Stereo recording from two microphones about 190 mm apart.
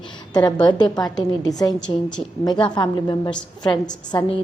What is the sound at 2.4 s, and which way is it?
A woman's voice, 20° left (ahead or behind).